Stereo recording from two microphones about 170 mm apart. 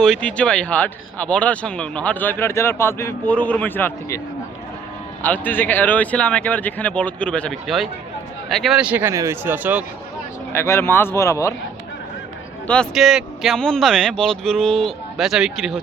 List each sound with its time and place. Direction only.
0.0 s speech: 5° left (ahead or behind)
5.2 s a man's voice: 10° left (ahead or behind); by 9.8 s 10° right (ahead or behind)
10.5 s speech: 15° left (ahead or behind)
12.6 s speech: 5° left (ahead or behind)